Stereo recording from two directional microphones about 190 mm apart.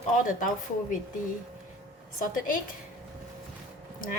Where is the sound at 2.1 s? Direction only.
45° left (ahead or behind).